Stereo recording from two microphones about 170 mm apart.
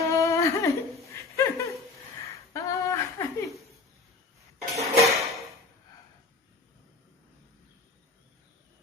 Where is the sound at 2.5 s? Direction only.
20° left (ahead or behind).